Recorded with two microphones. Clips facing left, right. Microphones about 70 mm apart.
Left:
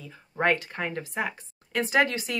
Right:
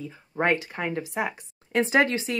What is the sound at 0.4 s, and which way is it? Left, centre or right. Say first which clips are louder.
Speech: right 1 dB; centre.